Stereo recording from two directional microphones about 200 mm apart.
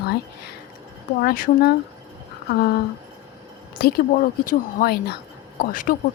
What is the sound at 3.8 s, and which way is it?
A woman's voice, 50° left (ahead or behind).